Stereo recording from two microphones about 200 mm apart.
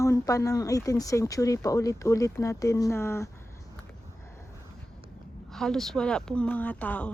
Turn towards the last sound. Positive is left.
turn(degrees=5)  # may be behind; listen again after turning